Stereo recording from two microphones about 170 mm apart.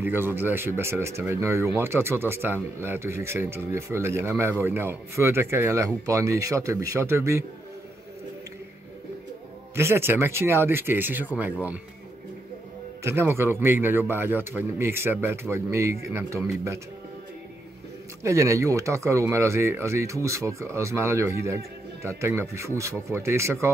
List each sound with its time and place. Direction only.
0.0 s speech: 10° right (ahead or behind)
9.8 s speech: 15° right (ahead or behind)
13.0 s speech: 15° right (ahead or behind)
18.2 s speech: 20° right (ahead or behind)